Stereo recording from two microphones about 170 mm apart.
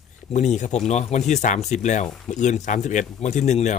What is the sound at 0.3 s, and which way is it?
Speech, 45° left (ahead or behind).